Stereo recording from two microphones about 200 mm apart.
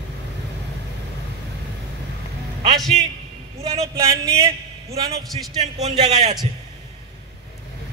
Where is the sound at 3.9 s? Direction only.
15° right (ahead or behind).